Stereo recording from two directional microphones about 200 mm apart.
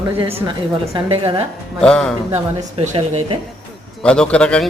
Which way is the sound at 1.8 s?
5° left (ahead or behind).